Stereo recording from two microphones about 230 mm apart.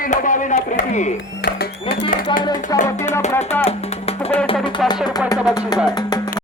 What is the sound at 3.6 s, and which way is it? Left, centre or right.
Speech, left.